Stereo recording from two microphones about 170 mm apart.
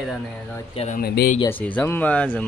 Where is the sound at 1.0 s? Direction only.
65° left (ahead or behind).